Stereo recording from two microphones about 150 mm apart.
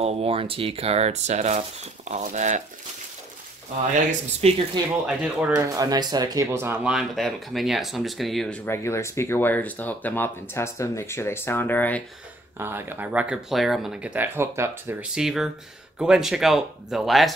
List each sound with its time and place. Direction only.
0.0 s speech: 40° right (ahead or behind)
4.1 s speech: 45° right (ahead or behind)
5.0 s speech: 10° right (ahead or behind)
5.6 s speech: 25° right (ahead or behind); by 12.0 s 10° left (ahead or behind)
12.5 s speech: 15° right (ahead or behind)
15.1 s speech: centre (ahead or behind)